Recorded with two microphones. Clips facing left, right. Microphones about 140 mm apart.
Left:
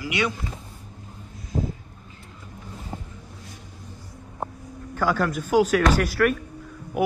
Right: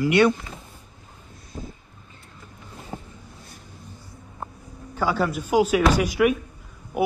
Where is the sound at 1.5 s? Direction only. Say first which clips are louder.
Left 9 dB; 35° left (ahead or behind).